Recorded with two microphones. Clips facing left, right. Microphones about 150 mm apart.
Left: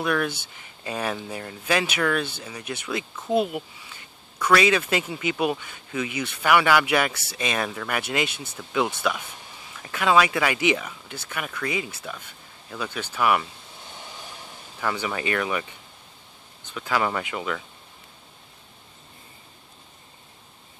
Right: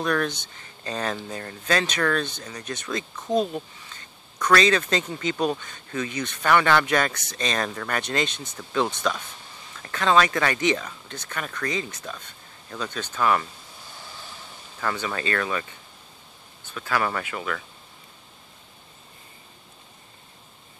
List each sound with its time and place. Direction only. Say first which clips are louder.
0.0 s speech: even; 10° left (ahead or behind)
14.8 s speech: left 1 dB; 10° left (ahead or behind)
16.7 s speech: left 1 dB; 15° left (ahead or behind)